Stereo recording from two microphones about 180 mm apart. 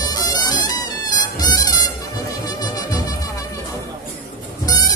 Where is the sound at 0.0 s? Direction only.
20° left (ahead or behind).